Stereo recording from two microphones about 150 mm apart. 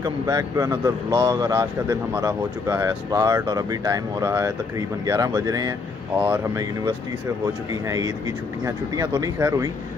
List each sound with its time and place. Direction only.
0.0 s speech: 25° right (ahead or behind)
6.1 s speech: 10° right (ahead or behind)
8.6 s speech: 25° right (ahead or behind)